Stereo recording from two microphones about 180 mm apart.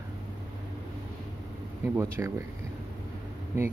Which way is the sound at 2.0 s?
15° right (ahead or behind).